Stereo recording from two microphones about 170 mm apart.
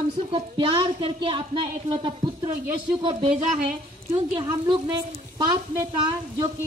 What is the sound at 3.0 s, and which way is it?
Speech, 30° right (ahead or behind).